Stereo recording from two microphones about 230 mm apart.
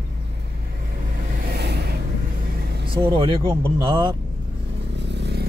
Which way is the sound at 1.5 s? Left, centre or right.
Right.